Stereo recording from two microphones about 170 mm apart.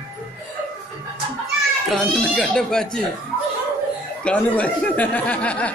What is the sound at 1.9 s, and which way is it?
Speech, centre (ahead or behind).